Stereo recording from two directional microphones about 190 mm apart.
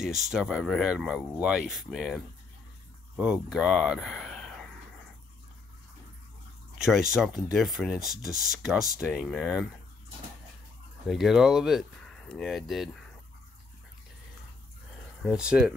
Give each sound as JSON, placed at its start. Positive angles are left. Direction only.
{"t": 0.0, "sound": "speech", "side_deg": 0}
{"t": 6.8, "sound": "speech", "side_deg": -5}
{"t": 11.1, "sound": "speech", "side_deg": 0}
{"t": 15.2, "sound": "speech", "side_deg": -5}